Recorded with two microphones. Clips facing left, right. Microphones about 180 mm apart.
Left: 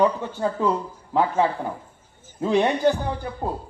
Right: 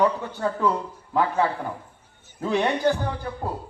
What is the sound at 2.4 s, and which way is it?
Speech, 20° left (ahead or behind).